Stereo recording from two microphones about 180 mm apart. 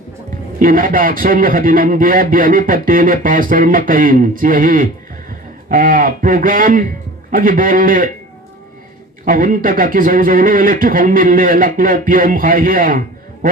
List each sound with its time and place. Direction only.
0.6 s a man's voice: 50° right (ahead or behind)
9.2 s a man's voice: 50° right (ahead or behind)